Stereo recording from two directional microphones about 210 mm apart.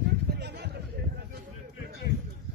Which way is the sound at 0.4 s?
50° right (ahead or behind).